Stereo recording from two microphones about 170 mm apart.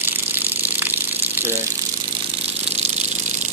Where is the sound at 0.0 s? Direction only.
10° right (ahead or behind).